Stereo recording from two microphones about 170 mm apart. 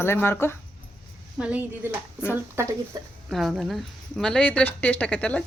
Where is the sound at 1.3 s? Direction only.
5° right (ahead or behind).